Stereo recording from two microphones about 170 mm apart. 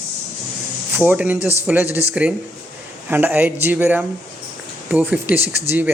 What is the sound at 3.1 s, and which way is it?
Speech, 10° right (ahead or behind).